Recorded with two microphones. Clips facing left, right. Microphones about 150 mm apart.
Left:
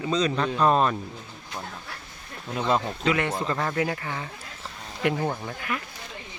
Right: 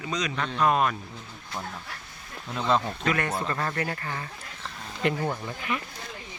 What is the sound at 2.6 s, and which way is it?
Speech, 10° left (ahead or behind).